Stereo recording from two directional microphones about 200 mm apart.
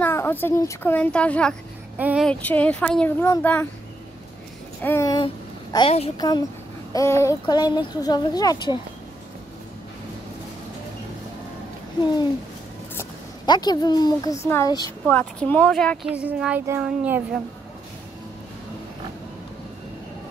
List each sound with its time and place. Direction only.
0.0 s a woman's voice: 10° left (ahead or behind)
2.0 s child singing: 10° right (ahead or behind)
2.2 s speech: 5° left (ahead or behind)
4.8 s a child's voice: 15° left (ahead or behind); by 6.1 s 30° left (ahead or behind)
6.1 s a woman's voice: 20° left (ahead or behind)
13.5 s a woman's voice: 20° left (ahead or behind); by 17.4 s 5° right (ahead or behind)